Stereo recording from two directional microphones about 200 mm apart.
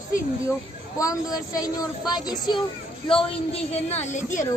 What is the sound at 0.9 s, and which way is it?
A woman's voice, 15° left (ahead or behind).